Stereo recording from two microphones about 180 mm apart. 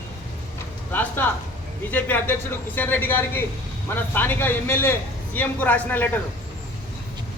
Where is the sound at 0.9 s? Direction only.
10° left (ahead or behind).